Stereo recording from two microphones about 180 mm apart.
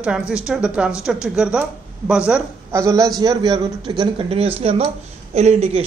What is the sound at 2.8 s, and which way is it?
A man's voice, 20° right (ahead or behind).